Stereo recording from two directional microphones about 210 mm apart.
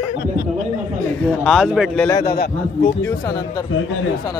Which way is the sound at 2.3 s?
45° left (ahead or behind).